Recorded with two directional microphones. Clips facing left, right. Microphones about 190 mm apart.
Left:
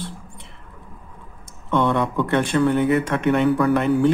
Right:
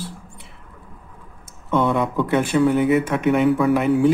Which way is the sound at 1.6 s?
5° right (ahead or behind).